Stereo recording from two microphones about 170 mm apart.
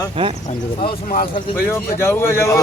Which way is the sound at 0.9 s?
55° left (ahead or behind).